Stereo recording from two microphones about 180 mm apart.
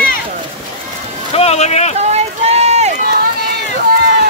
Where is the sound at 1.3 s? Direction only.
35° left (ahead or behind).